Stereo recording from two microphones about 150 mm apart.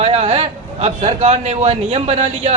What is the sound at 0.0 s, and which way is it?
A man's voice, 45° right (ahead or behind).